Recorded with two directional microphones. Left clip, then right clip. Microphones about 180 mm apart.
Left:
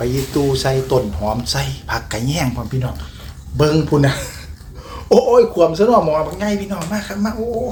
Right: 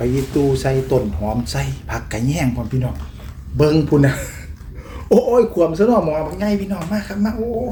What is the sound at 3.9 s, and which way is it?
Speech, 15° right (ahead or behind).